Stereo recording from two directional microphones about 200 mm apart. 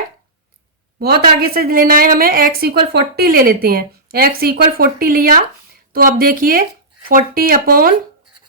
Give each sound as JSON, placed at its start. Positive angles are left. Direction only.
{"t": 0.9, "sound": "a woman's voice", "side_deg": -50}